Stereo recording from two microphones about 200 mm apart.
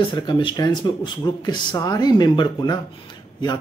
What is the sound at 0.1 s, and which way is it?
Speech, 25° left (ahead or behind).